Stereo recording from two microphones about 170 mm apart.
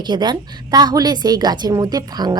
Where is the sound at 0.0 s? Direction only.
25° right (ahead or behind).